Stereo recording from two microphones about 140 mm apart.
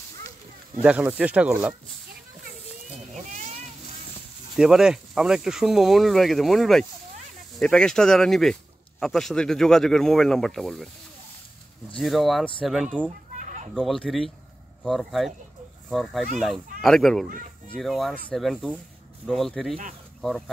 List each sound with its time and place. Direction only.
0.8 s speech: 10° right (ahead or behind)
3.3 s a sound: 60° right (ahead or behind)
4.6 s speech: 5° right (ahead or behind)
12.0 s speech: centre (ahead or behind)
13.4 s a sound: 60° right (ahead or behind)
13.7 s speech: centre (ahead or behind)